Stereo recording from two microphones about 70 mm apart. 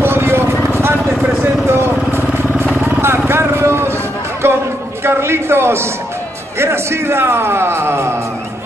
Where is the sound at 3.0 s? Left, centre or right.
Right.